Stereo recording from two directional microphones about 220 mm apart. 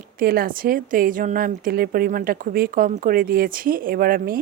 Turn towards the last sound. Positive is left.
turn(degrees=-40)  # may be behind; listen again after turning